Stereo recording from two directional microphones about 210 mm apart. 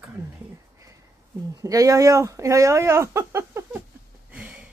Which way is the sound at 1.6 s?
15° right (ahead or behind).